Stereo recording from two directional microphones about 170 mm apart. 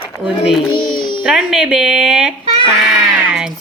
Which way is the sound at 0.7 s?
30° left (ahead or behind).